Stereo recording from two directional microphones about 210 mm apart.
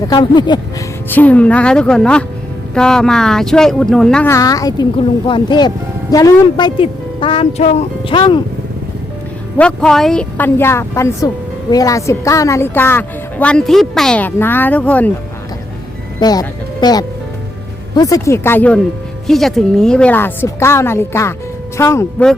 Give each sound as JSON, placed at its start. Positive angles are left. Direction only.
{"t": 0.1, "sound": "speech", "side_deg": 20}
{"t": 1.1, "sound": "a woman's voice", "side_deg": 5}
{"t": 9.6, "sound": "speech", "side_deg": 5}
{"t": 16.2, "sound": "speech", "side_deg": 20}